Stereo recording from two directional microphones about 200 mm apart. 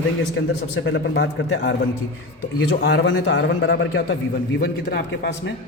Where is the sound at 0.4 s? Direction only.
65° left (ahead or behind).